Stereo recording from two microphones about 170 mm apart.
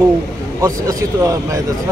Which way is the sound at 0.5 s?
20° right (ahead or behind).